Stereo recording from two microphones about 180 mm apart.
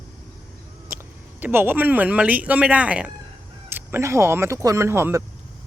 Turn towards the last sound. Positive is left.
turn(degrees=-15)  # may be behind; listen again after turning